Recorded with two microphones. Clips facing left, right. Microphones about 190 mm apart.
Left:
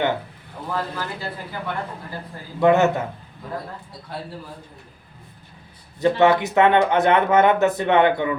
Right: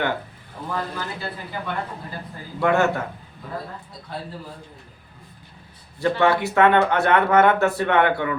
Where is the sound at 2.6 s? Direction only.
20° left (ahead or behind).